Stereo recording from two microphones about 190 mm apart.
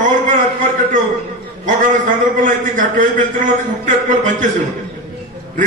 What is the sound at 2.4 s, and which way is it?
A man's voice, 45° right (ahead or behind).